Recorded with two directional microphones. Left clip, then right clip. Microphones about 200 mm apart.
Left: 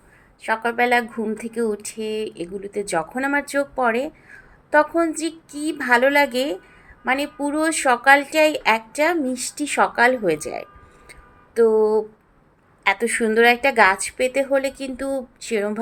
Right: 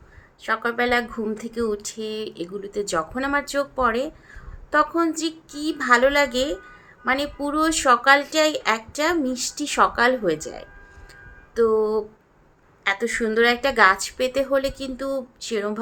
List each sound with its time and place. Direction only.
0.4 s a woman's voice: 10° left (ahead or behind)
10.3 s a woman's voice: 15° left (ahead or behind)
11.1 s a sound: 15° left (ahead or behind)
12.8 s a woman's voice: 15° left (ahead or behind)